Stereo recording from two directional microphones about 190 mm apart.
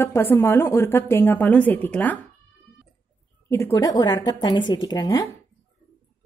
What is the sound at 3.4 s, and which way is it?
A woman's voice, 15° left (ahead or behind).